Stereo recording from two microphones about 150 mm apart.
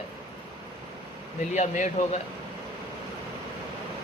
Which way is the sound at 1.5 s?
55° left (ahead or behind).